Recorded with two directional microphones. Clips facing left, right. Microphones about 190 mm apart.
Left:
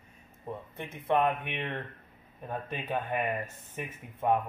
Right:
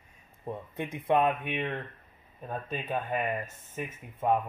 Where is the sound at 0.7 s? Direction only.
10° right (ahead or behind).